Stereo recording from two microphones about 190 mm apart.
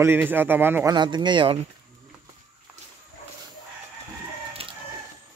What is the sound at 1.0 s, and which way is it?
Speech, 25° right (ahead or behind).